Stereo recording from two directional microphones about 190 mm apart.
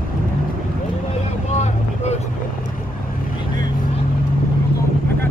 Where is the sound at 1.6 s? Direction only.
35° left (ahead or behind).